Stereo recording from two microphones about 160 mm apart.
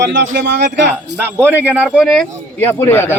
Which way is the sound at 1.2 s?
10° right (ahead or behind).